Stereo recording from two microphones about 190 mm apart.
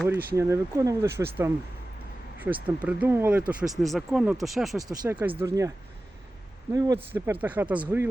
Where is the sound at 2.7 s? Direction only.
5° right (ahead or behind).